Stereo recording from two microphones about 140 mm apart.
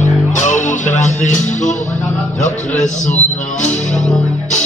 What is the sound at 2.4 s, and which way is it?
A man's voice, 60° left (ahead or behind).